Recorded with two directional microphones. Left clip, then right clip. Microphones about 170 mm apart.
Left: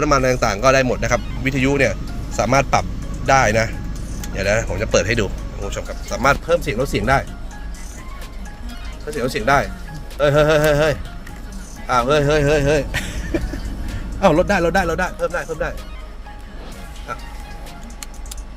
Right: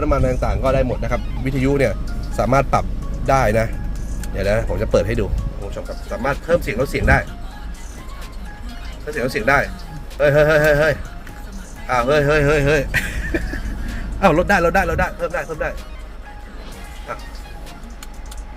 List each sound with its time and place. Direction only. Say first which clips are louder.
0.0 s speech: left 4 dB; 10° left (ahead or behind)
1.5 s a man's voice: left 1 dB; 15° right (ahead or behind)
6.1 s speech: left 3 dB; 15° left (ahead or behind)
9.0 s speech: even; 15° left (ahead or behind)